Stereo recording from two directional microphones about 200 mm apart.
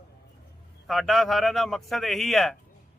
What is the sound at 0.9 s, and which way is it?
A man's voice, centre (ahead or behind).